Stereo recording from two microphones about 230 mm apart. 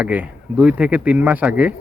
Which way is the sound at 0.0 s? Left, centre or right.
Centre.